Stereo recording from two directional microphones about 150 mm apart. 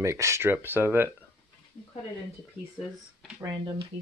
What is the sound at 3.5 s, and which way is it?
Speech, 25° right (ahead or behind).